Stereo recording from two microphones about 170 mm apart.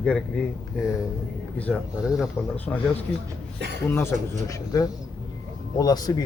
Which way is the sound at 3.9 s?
15° left (ahead or behind).